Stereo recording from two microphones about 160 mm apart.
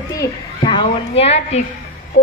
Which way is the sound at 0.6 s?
35° left (ahead or behind).